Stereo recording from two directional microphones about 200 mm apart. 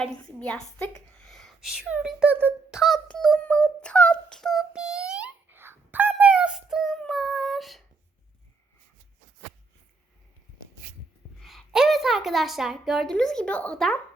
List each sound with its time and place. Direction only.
0.0 s a woman's voice: 5° left (ahead or behind)
1.2 s a sound: centre (ahead or behind)
11.4 s a woman's voice: centre (ahead or behind)